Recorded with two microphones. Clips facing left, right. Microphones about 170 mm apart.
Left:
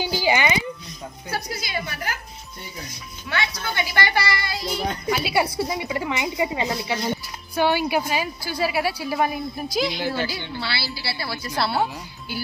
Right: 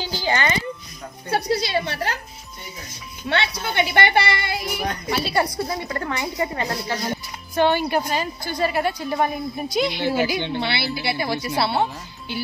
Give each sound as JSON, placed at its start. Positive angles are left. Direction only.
{"t": 0.0, "sound": "a sound", "side_deg": 10}
{"t": 1.3, "sound": "a woman's voice", "side_deg": -30}
{"t": 3.3, "sound": "a woman's voice", "side_deg": -25}
{"t": 5.2, "sound": "a woman's voice", "side_deg": 10}
{"t": 10.1, "sound": "a woman's voice", "side_deg": -15}
{"t": 11.5, "sound": "a woman's voice", "side_deg": 0}